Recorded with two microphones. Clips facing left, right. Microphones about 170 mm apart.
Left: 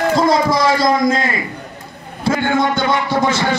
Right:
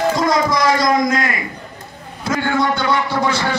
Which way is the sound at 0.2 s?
30° left (ahead or behind).